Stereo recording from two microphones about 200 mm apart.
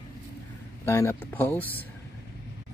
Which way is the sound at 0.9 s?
10° left (ahead or behind).